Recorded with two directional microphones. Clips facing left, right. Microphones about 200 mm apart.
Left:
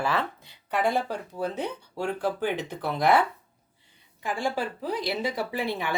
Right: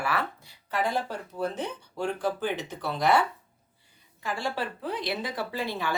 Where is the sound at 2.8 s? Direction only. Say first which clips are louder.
Left 2 dB; 15° left (ahead or behind).